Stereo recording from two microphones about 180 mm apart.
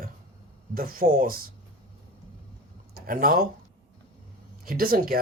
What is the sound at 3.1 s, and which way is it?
Speech, 55° right (ahead or behind).